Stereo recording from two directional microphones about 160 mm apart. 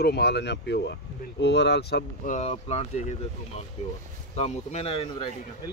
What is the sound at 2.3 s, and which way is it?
Speech, 45° left (ahead or behind).